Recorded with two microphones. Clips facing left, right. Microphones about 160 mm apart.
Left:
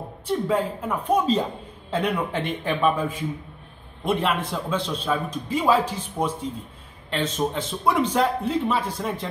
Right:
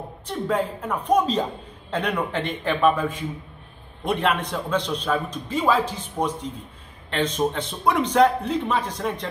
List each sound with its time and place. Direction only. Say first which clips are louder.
0.3 s a man's voice: left 1 dB; 5° left (ahead or behind)